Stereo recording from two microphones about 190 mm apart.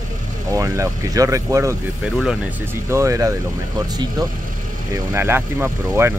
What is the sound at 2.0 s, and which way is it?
Speech, 5° right (ahead or behind).